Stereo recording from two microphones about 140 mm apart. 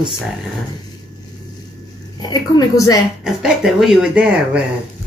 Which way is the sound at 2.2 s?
30° left (ahead or behind).